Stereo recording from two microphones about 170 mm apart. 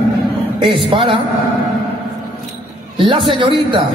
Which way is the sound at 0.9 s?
30° right (ahead or behind).